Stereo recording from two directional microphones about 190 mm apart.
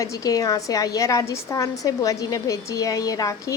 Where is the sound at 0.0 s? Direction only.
20° left (ahead or behind).